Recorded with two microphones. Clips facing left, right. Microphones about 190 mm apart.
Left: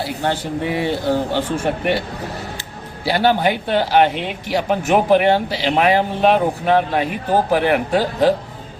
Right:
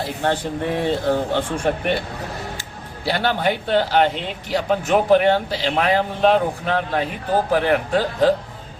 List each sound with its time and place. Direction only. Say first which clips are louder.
0.6 s speech: left 1 dB; 10° left (ahead or behind)
3.1 s speech: left 4 dB; 10° left (ahead or behind)